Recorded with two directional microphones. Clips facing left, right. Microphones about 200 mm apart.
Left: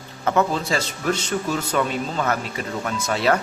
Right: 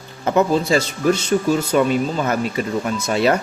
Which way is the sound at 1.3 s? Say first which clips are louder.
Right 6 dB; 25° right (ahead or behind).